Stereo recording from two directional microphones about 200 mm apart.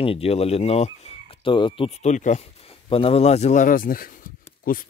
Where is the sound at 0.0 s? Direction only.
30° left (ahead or behind).